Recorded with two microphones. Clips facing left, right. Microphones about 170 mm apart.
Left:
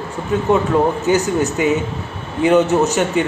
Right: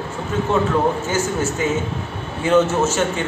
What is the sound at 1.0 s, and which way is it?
A man's voice, 15° left (ahead or behind).